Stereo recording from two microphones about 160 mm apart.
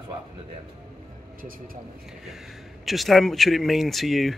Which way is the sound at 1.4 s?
65° right (ahead or behind).